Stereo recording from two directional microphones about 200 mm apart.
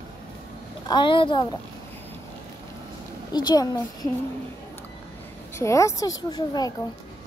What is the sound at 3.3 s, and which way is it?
Speech, 20° left (ahead or behind).